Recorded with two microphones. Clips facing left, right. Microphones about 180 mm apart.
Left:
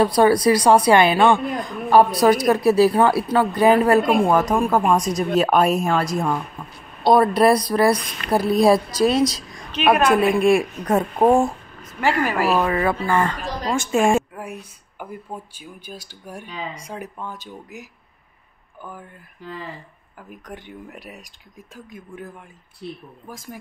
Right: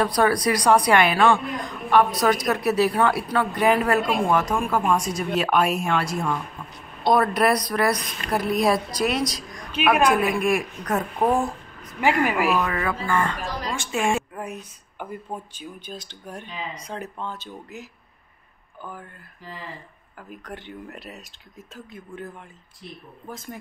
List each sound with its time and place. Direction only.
0.0 s speech: 25° left (ahead or behind)
7.0 s speech: 30° left (ahead or behind)
9.8 s a woman's voice: 10° right (ahead or behind)
10.2 s speech: 30° left (ahead or behind)
11.8 s speech: 15° right (ahead or behind)
12.4 s speech: 35° left (ahead or behind)
13.7 s a woman's voice: 45° left (ahead or behind)
14.3 s a sound: 10° left (ahead or behind)
15.5 s speech: 10° left (ahead or behind)
20.2 s speech: 15° left (ahead or behind)